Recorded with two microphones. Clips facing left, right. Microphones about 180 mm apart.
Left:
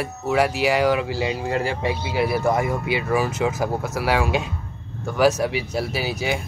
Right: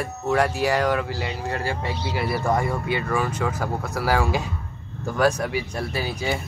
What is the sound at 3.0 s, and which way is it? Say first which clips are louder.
Speech: left 3 dB; 15° left (ahead or behind).